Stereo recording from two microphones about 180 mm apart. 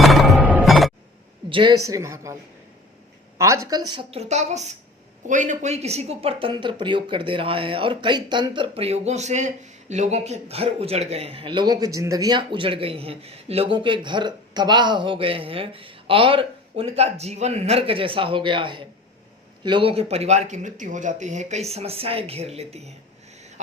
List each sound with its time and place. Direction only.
0.0 s music: centre (ahead or behind)
1.5 s a woman's voice: 25° right (ahead or behind)
4.2 s a man's voice: 40° right (ahead or behind)